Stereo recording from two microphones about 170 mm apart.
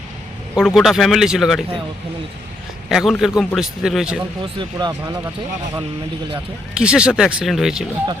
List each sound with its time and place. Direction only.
0.5 s a man's voice: 5° right (ahead or behind)
2.9 s a man's voice: centre (ahead or behind)
4.5 s speech: 25° right (ahead or behind)
6.7 s a man's voice: 5° right (ahead or behind)